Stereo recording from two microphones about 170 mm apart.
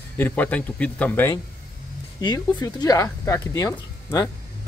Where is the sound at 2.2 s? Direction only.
25° left (ahead or behind).